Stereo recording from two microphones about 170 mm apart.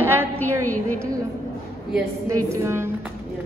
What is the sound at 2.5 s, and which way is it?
Speech, 15° right (ahead or behind).